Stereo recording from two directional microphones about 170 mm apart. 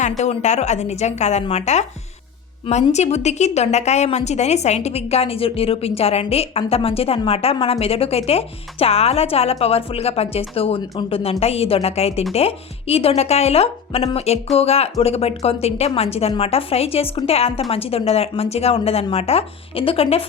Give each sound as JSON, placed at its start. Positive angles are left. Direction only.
{"t": 0.2, "sound": "a woman's voice", "side_deg": 45}
{"t": 2.9, "sound": "a woman's voice", "side_deg": 40}